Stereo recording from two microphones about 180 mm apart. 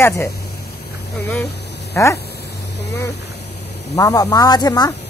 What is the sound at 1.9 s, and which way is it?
Speech, 15° left (ahead or behind).